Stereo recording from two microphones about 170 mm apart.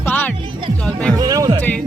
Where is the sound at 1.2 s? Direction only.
20° right (ahead or behind).